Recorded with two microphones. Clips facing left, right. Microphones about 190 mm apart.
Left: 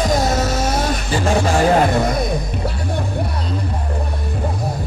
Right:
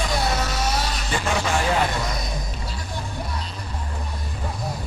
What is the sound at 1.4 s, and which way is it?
Speech, 45° left (ahead or behind).